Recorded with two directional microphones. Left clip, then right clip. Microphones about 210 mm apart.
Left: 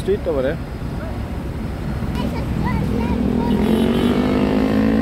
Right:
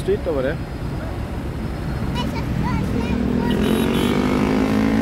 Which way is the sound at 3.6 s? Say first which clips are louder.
Left 2 dB; 45° right (ahead or behind).